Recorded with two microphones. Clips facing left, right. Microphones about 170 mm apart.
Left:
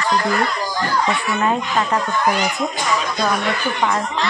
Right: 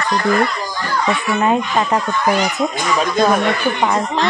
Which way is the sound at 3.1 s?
50° right (ahead or behind).